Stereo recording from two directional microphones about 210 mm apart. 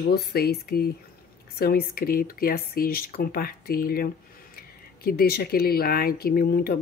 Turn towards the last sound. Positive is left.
turn(degrees=45)  # may be behind; listen again after turning